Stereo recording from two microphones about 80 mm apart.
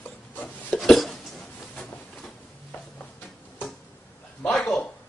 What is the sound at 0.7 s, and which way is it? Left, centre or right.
Hiccup, centre.